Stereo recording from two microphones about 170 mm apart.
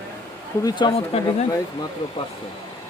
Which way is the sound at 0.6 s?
30° left (ahead or behind).